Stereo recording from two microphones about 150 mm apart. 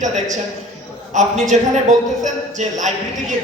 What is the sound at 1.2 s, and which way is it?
Speech, 50° right (ahead or behind).